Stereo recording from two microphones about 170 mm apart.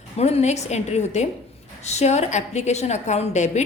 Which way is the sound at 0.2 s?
40° left (ahead or behind).